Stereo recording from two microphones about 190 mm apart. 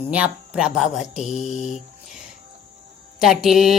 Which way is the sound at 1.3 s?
35° left (ahead or behind).